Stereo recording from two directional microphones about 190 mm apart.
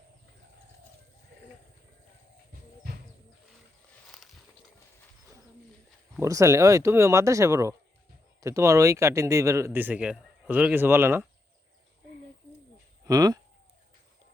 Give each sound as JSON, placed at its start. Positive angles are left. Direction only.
{"t": 6.1, "sound": "speech", "side_deg": -15}
{"t": 13.1, "sound": "speech", "side_deg": -20}